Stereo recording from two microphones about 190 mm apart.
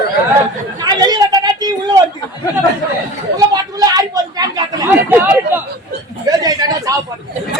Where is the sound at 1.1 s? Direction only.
20° right (ahead or behind).